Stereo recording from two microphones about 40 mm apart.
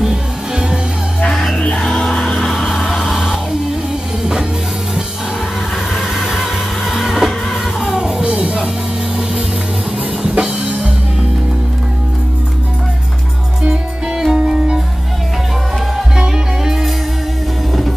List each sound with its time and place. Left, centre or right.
0.0 s music: centre
1.3 s music: centre
2.5 s music: centre
3.0 s music: centre
6.1 s music: centre
7.9 s music: centre
8.2 s music: right
10.2 s music: centre
13.6 s music: centre
16.2 s music: centre